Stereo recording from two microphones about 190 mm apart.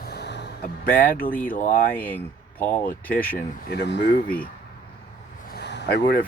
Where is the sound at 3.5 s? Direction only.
55° left (ahead or behind).